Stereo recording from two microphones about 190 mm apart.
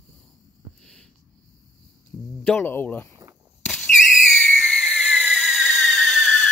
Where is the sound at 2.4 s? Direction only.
10° left (ahead or behind).